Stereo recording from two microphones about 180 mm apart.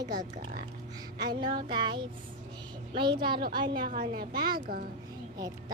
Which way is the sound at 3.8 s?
55° right (ahead or behind).